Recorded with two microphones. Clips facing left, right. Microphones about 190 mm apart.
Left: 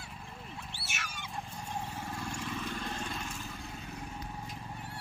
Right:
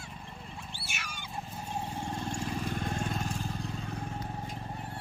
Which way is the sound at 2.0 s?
30° right (ahead or behind).